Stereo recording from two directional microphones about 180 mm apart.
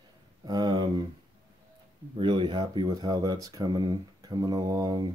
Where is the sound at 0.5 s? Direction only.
25° right (ahead or behind).